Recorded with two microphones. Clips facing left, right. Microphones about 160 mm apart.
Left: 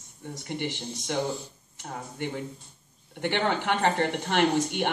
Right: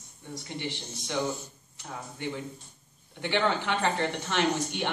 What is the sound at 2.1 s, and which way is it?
Speech, 55° left (ahead or behind).